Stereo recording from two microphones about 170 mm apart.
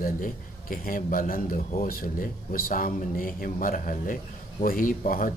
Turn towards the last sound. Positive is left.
turn(degrees=50)  # may be behind; listen again after turning